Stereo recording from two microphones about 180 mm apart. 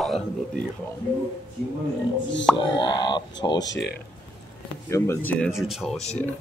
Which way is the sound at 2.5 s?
25° left (ahead or behind).